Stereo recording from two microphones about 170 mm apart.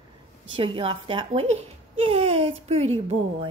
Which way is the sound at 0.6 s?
30° right (ahead or behind).